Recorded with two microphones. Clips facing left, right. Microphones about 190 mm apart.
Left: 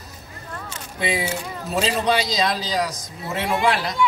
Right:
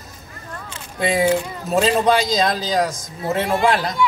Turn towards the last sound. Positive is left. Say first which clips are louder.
# right 3 dB
turn(degrees=-50)  # may be behind; listen again after turning